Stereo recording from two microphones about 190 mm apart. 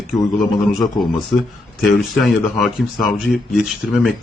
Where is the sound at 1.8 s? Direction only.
Centre (ahead or behind).